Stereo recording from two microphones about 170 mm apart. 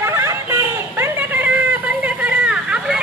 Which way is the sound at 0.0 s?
15° right (ahead or behind).